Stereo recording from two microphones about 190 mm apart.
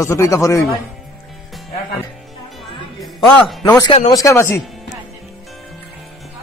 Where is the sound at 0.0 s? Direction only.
15° left (ahead or behind).